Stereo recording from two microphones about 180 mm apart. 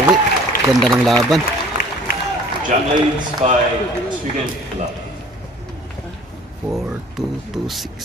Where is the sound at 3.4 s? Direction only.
40° right (ahead or behind).